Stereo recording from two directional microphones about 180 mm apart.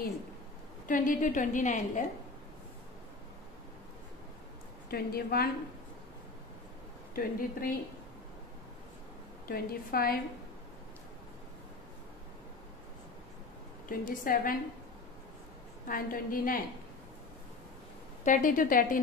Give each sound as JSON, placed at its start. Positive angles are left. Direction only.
{"t": 0.8, "sound": "a woman's voice", "side_deg": 50}
{"t": 4.8, "sound": "a woman's voice", "side_deg": 60}
{"t": 7.2, "sound": "a woman's voice", "side_deg": 55}
{"t": 9.5, "sound": "a woman's voice", "side_deg": 55}
{"t": 13.8, "sound": "a woman's voice", "side_deg": 50}
{"t": 15.9, "sound": "a woman's voice", "side_deg": 50}
{"t": 18.2, "sound": "a woman's voice", "side_deg": 45}